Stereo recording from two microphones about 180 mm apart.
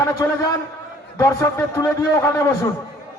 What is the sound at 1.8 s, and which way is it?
Speech, 15° left (ahead or behind).